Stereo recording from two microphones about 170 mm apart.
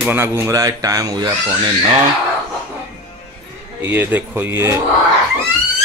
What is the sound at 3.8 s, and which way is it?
Speech, 10° right (ahead or behind).